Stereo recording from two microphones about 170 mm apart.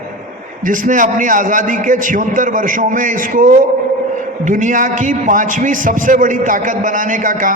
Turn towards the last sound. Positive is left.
turn(degrees=-50)  # may be behind; listen again after turning